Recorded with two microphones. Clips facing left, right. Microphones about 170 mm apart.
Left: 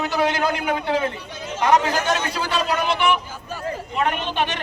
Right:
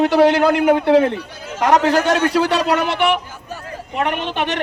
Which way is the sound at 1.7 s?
70° right (ahead or behind).